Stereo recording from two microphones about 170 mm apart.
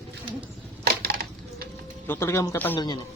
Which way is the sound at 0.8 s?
65° right (ahead or behind).